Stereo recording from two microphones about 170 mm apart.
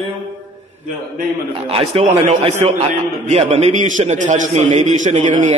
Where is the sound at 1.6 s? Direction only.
35° right (ahead or behind).